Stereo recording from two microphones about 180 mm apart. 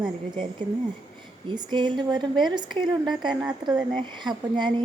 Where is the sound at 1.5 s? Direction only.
25° right (ahead or behind).